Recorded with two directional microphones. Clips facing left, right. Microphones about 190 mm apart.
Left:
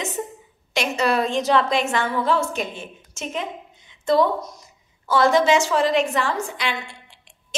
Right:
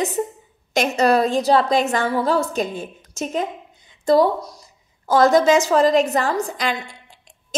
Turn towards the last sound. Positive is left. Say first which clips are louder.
# right 3 dB
turn(degrees=-40)  # may be behind; listen again after turning